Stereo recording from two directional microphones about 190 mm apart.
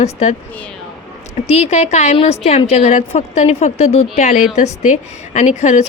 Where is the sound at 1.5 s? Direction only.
35° left (ahead or behind).